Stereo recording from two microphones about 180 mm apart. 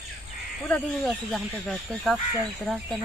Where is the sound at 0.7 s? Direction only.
5° left (ahead or behind).